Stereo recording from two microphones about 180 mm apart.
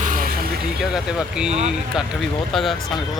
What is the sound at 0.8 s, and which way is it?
A man's voice, 5° right (ahead or behind).